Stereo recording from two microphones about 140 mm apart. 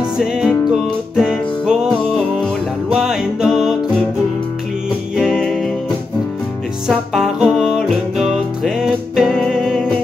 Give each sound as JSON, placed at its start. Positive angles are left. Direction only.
{"t": 0.2, "sound": "music", "side_deg": -5}
{"t": 5.1, "sound": "music", "side_deg": -5}
{"t": 6.9, "sound": "music", "side_deg": -5}